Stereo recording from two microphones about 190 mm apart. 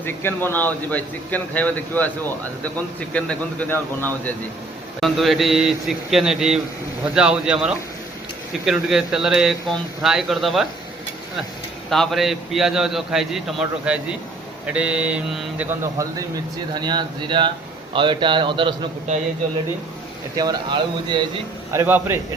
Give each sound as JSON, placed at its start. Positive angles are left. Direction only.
{"t": 0.0, "sound": "speech", "side_deg": 10}
{"t": 3.1, "sound": "a man's voice", "side_deg": 5}
{"t": 11.9, "sound": "a man's voice", "side_deg": 0}
{"t": 20.3, "sound": "a man's voice", "side_deg": -20}
{"t": 21.7, "sound": "speech", "side_deg": -10}